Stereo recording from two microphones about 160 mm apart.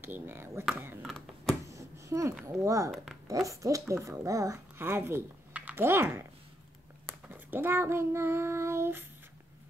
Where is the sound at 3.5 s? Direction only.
20° right (ahead or behind).